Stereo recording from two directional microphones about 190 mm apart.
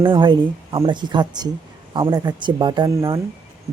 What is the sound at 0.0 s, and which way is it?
Speech, 25° right (ahead or behind).